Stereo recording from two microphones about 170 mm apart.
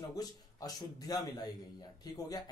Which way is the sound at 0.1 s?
20° left (ahead or behind).